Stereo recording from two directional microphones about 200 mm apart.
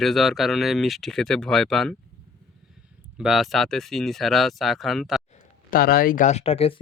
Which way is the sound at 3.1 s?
Centre (ahead or behind).